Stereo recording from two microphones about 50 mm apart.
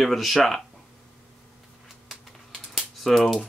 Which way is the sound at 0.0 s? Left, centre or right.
Centre.